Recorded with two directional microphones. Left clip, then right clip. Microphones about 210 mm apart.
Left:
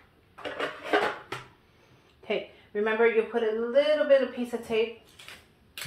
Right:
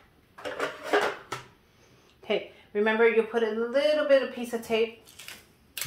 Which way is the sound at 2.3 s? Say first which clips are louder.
Right 2 dB; 45° right (ahead or behind).